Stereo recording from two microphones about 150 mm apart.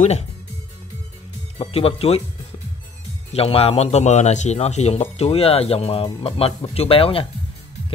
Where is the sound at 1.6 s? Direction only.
40° left (ahead or behind).